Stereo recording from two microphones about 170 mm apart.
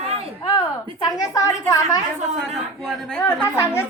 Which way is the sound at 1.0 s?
20° left (ahead or behind).